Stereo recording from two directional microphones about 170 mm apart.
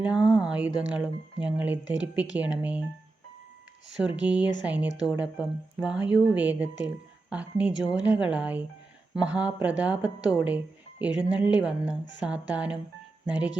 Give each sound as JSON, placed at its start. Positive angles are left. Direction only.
{"t": 0.0, "sound": "speech", "side_deg": -5}
{"t": 3.9, "sound": "speech", "side_deg": -5}